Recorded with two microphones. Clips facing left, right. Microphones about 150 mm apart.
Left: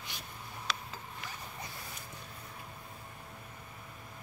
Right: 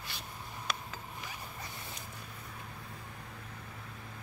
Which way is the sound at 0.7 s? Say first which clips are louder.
Even; 50° right (ahead or behind).